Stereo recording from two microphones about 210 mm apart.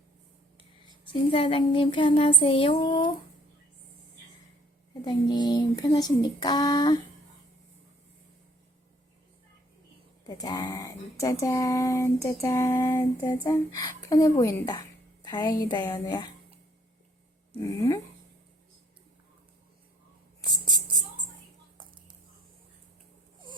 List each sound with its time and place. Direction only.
1.0 s child singing: 25° left (ahead or behind)
5.0 s child singing: 20° left (ahead or behind)
10.2 s speech: 20° left (ahead or behind)
17.7 s speech: 15° left (ahead or behind)